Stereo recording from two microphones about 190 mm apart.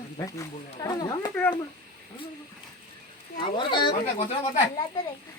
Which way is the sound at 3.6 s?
25° left (ahead or behind).